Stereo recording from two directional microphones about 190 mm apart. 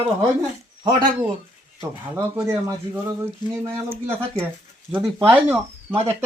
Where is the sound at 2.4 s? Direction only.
15° right (ahead or behind).